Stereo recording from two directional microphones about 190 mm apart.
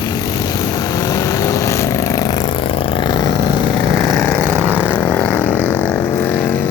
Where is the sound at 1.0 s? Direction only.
15° left (ahead or behind).